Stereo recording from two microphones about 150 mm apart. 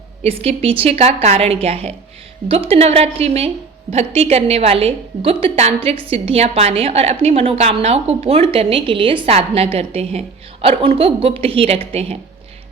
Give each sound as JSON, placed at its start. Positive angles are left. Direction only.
{"t": 0.2, "sound": "a woman's voice", "side_deg": -40}